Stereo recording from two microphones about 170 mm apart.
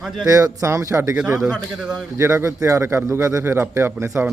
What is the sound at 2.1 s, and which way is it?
A man's voice, 15° right (ahead or behind).